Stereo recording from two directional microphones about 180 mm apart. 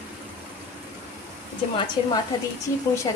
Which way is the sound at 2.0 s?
25° left (ahead or behind).